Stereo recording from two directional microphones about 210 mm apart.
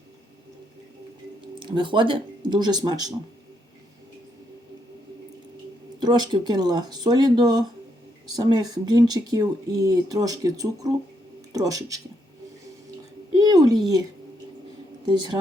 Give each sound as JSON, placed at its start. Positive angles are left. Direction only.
{"t": 1.5, "sound": "speech", "side_deg": -20}
{"t": 6.0, "sound": "speech", "side_deg": -20}
{"t": 13.3, "sound": "a sound", "side_deg": -20}
{"t": 15.0, "sound": "speech", "side_deg": -20}